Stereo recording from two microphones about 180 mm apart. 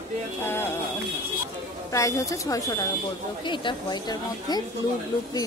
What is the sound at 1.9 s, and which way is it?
Speech, 15° left (ahead or behind).